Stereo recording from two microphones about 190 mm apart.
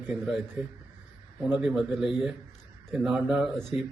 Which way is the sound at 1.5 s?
5° right (ahead or behind).